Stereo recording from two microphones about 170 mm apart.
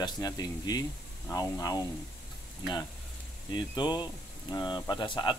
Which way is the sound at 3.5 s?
25° left (ahead or behind).